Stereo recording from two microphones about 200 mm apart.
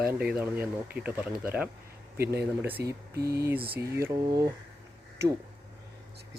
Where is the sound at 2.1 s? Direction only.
50° right (ahead or behind).